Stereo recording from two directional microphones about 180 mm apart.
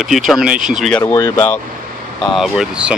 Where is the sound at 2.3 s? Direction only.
Centre (ahead or behind).